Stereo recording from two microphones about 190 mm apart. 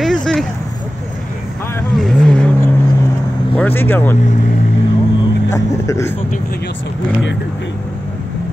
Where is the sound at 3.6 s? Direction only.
10° left (ahead or behind).